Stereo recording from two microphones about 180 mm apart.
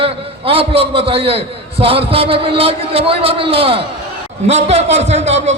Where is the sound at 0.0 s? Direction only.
30° right (ahead or behind).